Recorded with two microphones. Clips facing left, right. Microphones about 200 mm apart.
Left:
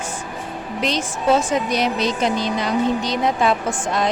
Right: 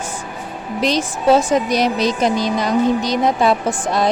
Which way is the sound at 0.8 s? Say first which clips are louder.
Right 4 dB; 35° right (ahead or behind).